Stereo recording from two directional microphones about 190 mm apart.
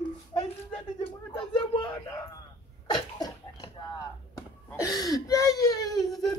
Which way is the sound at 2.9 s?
20° left (ahead or behind).